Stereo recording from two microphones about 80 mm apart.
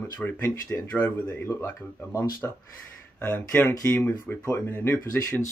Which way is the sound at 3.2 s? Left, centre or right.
Left.